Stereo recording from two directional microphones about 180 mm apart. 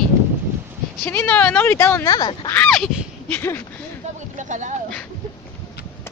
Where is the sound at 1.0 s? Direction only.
10° left (ahead or behind).